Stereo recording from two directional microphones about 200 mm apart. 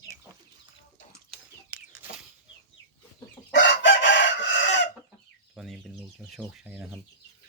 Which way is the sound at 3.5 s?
65° left (ahead or behind).